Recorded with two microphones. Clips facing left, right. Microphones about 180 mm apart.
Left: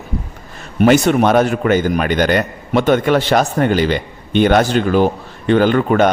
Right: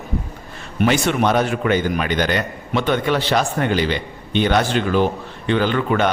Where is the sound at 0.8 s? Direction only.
40° left (ahead or behind).